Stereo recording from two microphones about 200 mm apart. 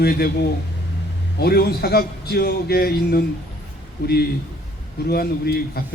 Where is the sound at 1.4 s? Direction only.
50° left (ahead or behind).